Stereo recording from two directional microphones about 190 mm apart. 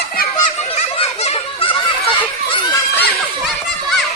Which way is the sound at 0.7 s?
35° left (ahead or behind).